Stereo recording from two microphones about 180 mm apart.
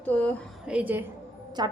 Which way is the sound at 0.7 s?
10° right (ahead or behind).